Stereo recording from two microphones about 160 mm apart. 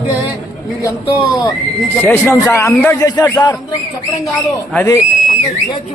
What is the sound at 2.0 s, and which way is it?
Speech, 15° left (ahead or behind).